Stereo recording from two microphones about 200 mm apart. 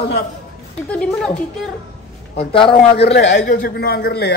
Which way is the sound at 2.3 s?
25° left (ahead or behind).